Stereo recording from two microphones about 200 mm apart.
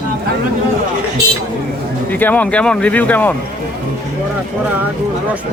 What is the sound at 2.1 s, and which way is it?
Speech, 10° left (ahead or behind).